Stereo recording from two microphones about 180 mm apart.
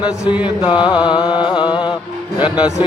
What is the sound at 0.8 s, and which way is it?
Speech, 5° right (ahead or behind).